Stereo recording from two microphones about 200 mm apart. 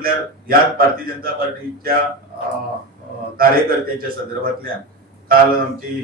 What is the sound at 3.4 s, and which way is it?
A man's voice, 45° right (ahead or behind).